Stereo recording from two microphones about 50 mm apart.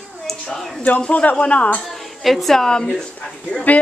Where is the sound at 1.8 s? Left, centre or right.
Centre.